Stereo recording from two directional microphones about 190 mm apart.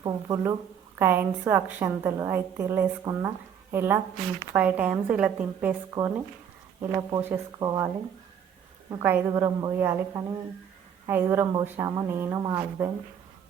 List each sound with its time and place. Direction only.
0.0 s a woman's voice: 15° right (ahead or behind)
8.9 s a woman's voice: 10° right (ahead or behind)